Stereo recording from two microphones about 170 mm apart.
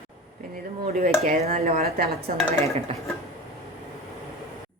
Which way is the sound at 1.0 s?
55° right (ahead or behind).